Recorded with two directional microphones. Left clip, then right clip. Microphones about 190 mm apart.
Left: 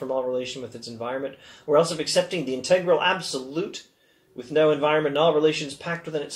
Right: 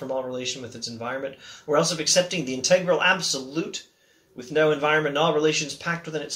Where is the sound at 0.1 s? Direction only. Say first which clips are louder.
Left 2 dB; 15° right (ahead or behind).